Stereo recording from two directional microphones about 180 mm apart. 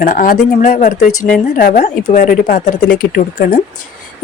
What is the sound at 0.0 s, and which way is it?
Speech, 50° left (ahead or behind).